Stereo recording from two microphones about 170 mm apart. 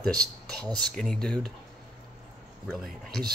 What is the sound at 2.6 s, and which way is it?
Speech, centre (ahead or behind).